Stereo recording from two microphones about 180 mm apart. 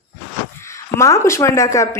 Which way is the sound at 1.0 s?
15° left (ahead or behind).